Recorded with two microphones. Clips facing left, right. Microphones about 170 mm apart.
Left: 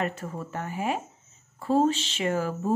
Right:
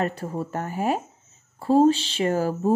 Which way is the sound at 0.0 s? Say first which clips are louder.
Right 4 dB; 35° right (ahead or behind).